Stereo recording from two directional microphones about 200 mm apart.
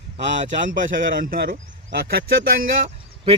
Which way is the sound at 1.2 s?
45° right (ahead or behind).